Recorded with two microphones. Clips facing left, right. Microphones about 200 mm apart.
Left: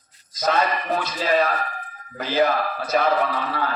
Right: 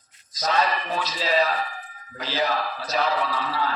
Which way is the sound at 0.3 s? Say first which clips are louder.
Left 2 dB; 50° left (ahead or behind).